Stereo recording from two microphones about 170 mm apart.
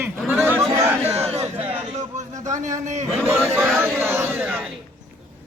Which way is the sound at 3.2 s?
10° right (ahead or behind).